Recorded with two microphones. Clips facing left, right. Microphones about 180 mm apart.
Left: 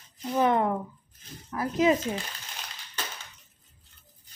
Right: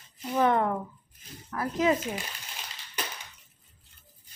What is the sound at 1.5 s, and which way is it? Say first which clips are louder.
Speech: left 2 dB; 20° left (ahead or behind).